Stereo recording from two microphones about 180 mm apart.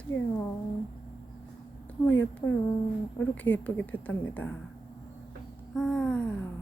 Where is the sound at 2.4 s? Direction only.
10° left (ahead or behind).